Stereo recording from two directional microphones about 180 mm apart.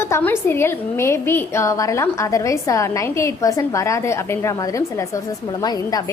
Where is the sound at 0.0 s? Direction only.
10° left (ahead or behind).